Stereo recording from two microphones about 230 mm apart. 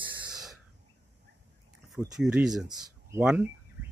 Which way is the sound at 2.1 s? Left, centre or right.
Centre.